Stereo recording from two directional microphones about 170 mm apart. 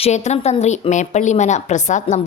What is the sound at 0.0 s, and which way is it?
A woman's voice, 40° left (ahead or behind).